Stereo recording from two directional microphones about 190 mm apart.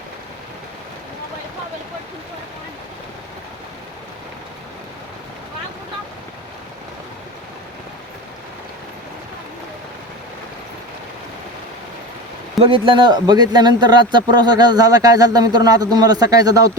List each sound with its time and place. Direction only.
12.6 s a man's voice: 25° right (ahead or behind)